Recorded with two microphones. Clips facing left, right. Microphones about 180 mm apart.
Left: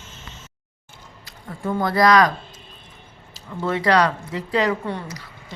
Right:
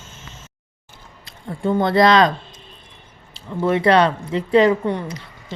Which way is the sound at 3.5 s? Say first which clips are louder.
Right 4 dB; 20° right (ahead or behind).